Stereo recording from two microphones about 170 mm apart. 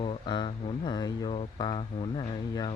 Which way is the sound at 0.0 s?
30° left (ahead or behind).